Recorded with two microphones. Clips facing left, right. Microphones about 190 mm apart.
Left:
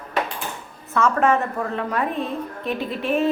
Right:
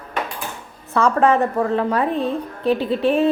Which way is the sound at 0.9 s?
35° right (ahead or behind).